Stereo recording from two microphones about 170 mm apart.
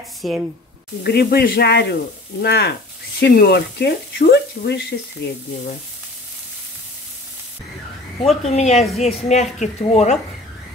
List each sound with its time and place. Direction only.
0.2 s speech: centre (ahead or behind)
1.0 s speech: 65° left (ahead or behind)
8.5 s a woman's voice: 40° left (ahead or behind)